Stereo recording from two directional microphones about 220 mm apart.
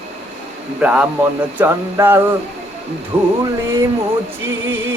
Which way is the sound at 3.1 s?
25° right (ahead or behind).